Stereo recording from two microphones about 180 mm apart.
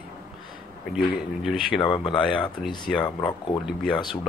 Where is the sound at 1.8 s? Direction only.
25° left (ahead or behind).